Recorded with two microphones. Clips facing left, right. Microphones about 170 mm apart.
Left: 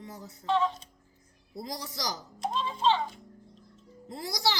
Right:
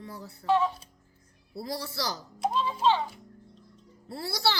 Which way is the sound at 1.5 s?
15° left (ahead or behind).